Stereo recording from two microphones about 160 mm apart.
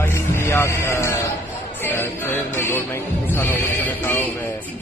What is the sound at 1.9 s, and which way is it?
Music, 15° left (ahead or behind).